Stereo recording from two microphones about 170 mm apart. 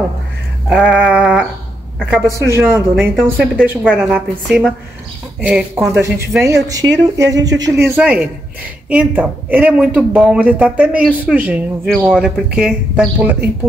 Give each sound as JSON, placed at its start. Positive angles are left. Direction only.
{"t": 0.7, "sound": "sheep", "side_deg": -5}
{"t": 2.0, "sound": "speech", "side_deg": -5}
{"t": 2.3, "sound": "speech", "side_deg": -15}
{"t": 3.0, "sound": "speech", "side_deg": -5}
{"t": 7.8, "sound": "speech", "side_deg": -10}